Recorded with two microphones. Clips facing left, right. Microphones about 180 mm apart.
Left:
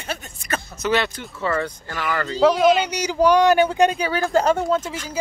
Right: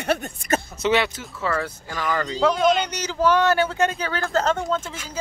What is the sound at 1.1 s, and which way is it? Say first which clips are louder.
Speech: left 2 dB; 5° right (ahead or behind).